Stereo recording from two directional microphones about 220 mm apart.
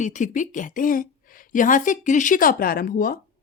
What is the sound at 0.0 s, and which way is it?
A woman's voice, 35° left (ahead or behind).